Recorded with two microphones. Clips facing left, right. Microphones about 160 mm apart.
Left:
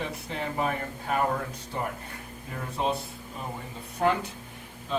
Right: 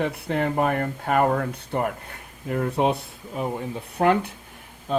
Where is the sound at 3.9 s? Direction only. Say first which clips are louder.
Right 5 dB; 60° right (ahead or behind).